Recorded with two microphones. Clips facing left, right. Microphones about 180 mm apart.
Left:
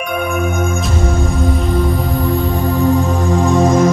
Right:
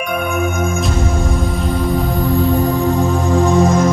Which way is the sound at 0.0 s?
Centre (ahead or behind).